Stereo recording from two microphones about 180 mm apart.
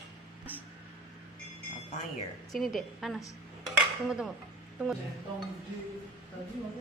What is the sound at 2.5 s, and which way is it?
A woman's voice, centre (ahead or behind).